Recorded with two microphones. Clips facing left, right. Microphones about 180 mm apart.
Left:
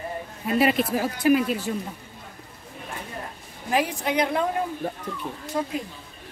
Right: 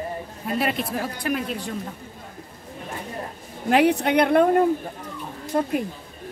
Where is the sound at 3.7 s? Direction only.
65° right (ahead or behind).